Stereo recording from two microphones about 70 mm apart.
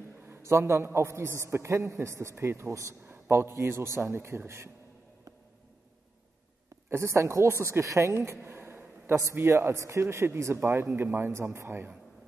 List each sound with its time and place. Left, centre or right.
0.5 s a man's voice: right
6.9 s speech: right